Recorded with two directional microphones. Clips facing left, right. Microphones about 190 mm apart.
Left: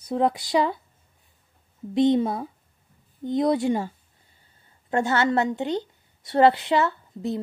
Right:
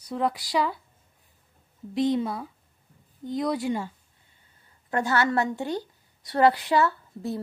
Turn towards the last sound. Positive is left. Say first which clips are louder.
# left 3 dB
turn(degrees=20)  # may be behind; listen again after turning